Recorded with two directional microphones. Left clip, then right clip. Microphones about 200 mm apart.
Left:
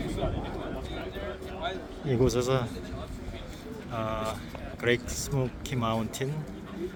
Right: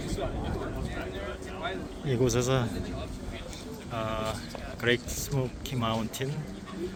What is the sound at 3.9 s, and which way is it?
Speech, 5° left (ahead or behind).